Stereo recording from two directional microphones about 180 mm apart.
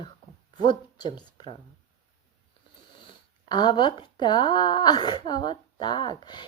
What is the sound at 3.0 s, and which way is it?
Speech, 25° left (ahead or behind).